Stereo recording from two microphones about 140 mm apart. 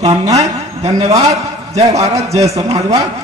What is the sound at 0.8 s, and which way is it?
A man's voice, 50° right (ahead or behind).